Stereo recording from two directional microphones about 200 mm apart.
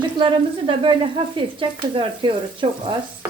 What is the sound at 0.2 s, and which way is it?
Speech, 25° right (ahead or behind).